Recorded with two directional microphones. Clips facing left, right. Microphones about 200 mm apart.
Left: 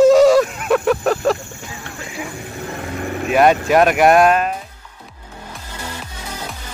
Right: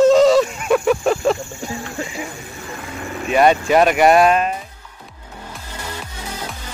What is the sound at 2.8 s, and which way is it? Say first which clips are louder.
Vehicle: left 5 dB; 55° left (ahead or behind).